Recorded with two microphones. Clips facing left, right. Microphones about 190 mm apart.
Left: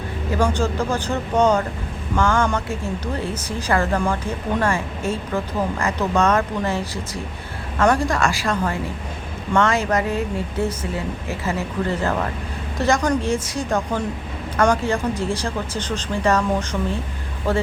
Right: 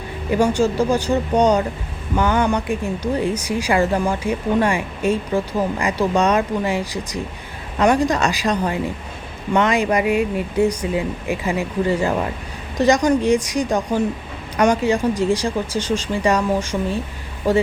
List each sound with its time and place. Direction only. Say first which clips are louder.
0.3 s speech: right 4 dB; 15° right (ahead or behind)